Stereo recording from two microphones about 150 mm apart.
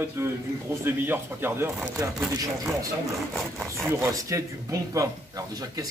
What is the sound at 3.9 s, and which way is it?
Speech, 20° right (ahead or behind).